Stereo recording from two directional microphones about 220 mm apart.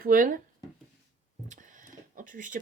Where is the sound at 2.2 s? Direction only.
35° right (ahead or behind).